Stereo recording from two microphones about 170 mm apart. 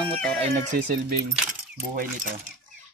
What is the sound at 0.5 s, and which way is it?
A man's voice, 50° right (ahead or behind).